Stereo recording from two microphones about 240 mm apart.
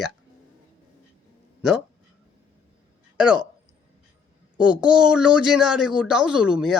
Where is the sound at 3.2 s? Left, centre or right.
Centre.